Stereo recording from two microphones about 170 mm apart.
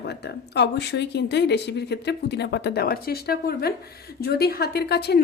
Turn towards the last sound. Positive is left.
turn(degrees=75)  # may be behind; listen again after turning